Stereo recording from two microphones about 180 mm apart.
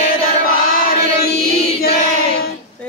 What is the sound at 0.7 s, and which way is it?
Choir, 55° left (ahead or behind).